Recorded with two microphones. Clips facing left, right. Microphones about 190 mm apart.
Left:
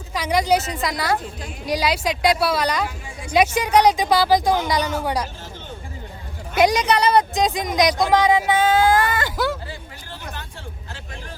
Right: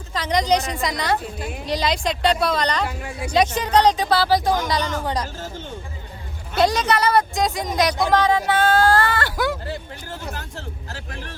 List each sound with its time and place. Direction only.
0.1 s speech: 10° left (ahead or behind)
3.0 s speech: 65° right (ahead or behind)
3.3 s speech: 10° left (ahead or behind)
6.5 s speech: 15° left (ahead or behind)